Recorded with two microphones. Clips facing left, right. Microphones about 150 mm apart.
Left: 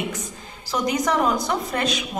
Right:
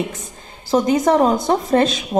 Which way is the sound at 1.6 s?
25° right (ahead or behind).